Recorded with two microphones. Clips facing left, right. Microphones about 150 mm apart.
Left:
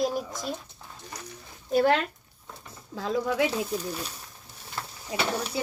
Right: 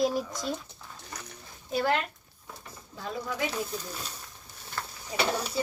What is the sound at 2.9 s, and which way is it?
Speech, 90° left.